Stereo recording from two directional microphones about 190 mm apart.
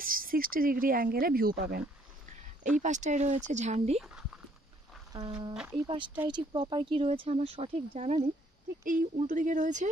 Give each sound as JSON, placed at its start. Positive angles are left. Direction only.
{"t": 0.0, "sound": "speech", "side_deg": -50}
{"t": 2.8, "sound": "speech", "side_deg": -40}
{"t": 4.0, "sound": "speech", "side_deg": -5}
{"t": 5.1, "sound": "speech", "side_deg": -20}
{"t": 5.5, "sound": "speech", "side_deg": -5}
{"t": 5.9, "sound": "speech", "side_deg": -25}